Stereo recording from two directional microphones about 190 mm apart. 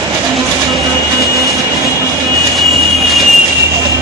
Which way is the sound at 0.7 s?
Centre (ahead or behind).